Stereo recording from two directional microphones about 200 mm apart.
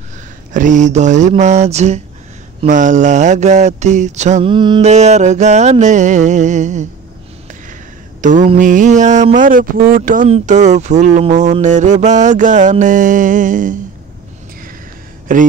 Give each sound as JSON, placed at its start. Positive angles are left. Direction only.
{"t": 0.5, "sound": "speech", "side_deg": -40}
{"t": 4.8, "sound": "speech", "side_deg": -35}
{"t": 8.2, "sound": "speech", "side_deg": -40}
{"t": 15.3, "sound": "speech", "side_deg": -40}